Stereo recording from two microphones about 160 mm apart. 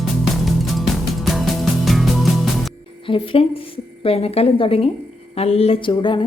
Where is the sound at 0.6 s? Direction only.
Centre (ahead or behind).